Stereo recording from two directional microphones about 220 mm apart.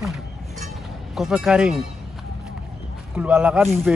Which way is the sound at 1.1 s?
Centre (ahead or behind).